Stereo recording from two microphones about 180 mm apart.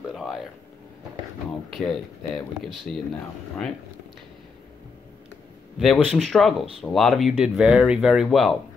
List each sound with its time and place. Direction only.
0.1 s a sound: centre (ahead or behind)
1.7 s speech: centre (ahead or behind)
5.8 s speech: centre (ahead or behind)